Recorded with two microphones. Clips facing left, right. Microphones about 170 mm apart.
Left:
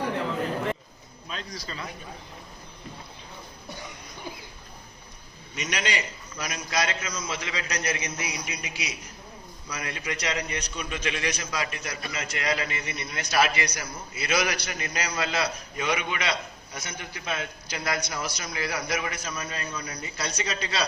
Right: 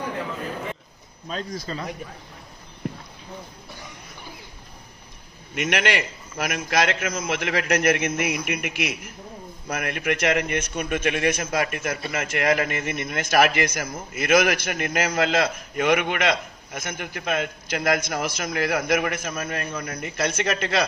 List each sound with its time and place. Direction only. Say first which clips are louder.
1.3 s a man's voice: right 7 dB; 45° right (ahead or behind)
5.5 s a man's voice: right 7 dB; 55° right (ahead or behind)